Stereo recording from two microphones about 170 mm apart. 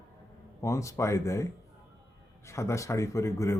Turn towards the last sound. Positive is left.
turn(degrees=15)  # may be behind; listen again after turning